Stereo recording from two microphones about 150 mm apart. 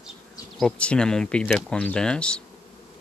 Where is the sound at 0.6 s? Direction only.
5° left (ahead or behind).